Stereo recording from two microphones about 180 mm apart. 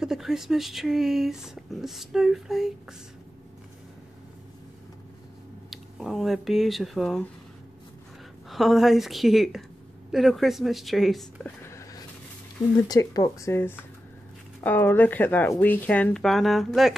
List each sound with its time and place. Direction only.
0.0 s speech: centre (ahead or behind)
5.7 s speech: centre (ahead or behind)
8.5 s speech: centre (ahead or behind)
11.6 s a sound: 15° left (ahead or behind)
12.8 s speech: 20° left (ahead or behind); by 16.9 s centre (ahead or behind)